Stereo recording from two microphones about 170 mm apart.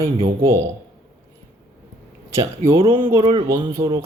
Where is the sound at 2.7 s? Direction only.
30° right (ahead or behind).